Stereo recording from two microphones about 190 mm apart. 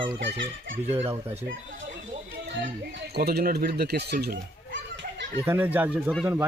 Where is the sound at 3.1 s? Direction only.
55° right (ahead or behind).